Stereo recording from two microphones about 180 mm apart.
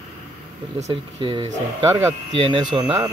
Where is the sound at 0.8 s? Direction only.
30° right (ahead or behind).